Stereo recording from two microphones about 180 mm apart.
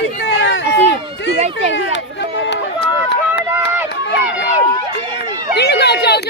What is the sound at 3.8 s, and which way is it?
Run, 75° left (ahead or behind).